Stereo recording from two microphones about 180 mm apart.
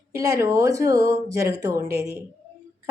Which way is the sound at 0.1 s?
20° right (ahead or behind).